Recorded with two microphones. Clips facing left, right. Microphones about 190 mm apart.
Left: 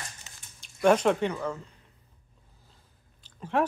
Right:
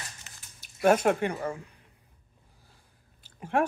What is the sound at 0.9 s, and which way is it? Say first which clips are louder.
Speech: even; 50° right (ahead or behind).